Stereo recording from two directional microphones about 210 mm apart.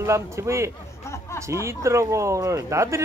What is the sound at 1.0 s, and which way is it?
Chatter, 15° left (ahead or behind).